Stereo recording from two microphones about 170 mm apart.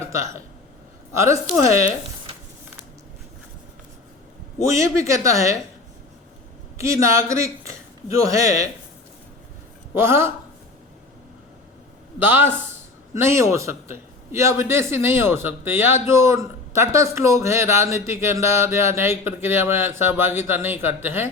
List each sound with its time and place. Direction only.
1.1 s speech: 15° right (ahead or behind)
4.6 s speech: 15° right (ahead or behind)
6.7 s speech: 15° right (ahead or behind)
9.9 s speech: 15° right (ahead or behind)
12.2 s speech: 10° right (ahead or behind)